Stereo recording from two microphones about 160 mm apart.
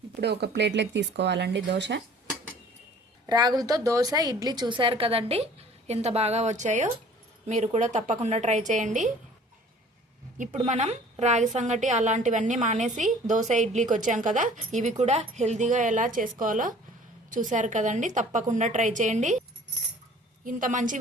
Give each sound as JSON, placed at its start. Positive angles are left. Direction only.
{"t": 0.2, "sound": "speech", "side_deg": -90}
{"t": 3.2, "sound": "a woman's voice", "side_deg": -25}
{"t": 10.7, "sound": "a woman's voice", "side_deg": -45}
{"t": 20.4, "sound": "a woman's voice", "side_deg": -55}